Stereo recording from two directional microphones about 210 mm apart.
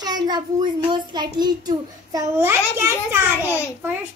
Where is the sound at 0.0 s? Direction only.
20° right (ahead or behind).